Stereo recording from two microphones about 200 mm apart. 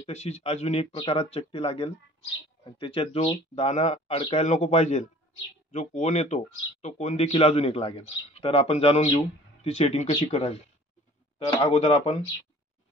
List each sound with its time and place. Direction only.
0.0 s speech: 35° left (ahead or behind)